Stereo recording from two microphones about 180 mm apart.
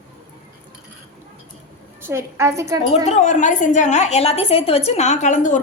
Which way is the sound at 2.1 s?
15° right (ahead or behind).